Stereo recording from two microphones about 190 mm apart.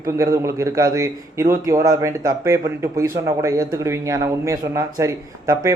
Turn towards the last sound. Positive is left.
turn(degrees=-15)  # may be behind; listen again after turning